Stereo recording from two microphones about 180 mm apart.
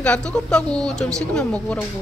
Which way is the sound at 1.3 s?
5° left (ahead or behind).